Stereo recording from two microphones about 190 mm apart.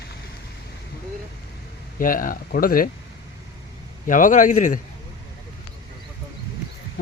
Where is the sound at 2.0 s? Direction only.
45° left (ahead or behind).